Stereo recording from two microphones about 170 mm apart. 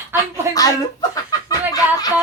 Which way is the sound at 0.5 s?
20° left (ahead or behind).